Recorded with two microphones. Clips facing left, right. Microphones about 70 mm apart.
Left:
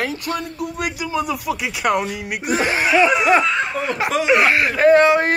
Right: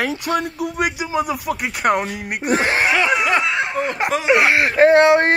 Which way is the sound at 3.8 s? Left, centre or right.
Right.